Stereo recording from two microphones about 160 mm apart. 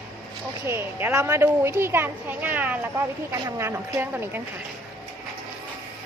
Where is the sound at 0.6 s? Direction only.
15° right (ahead or behind).